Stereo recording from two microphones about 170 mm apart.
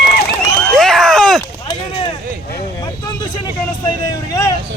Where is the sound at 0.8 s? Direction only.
5° left (ahead or behind).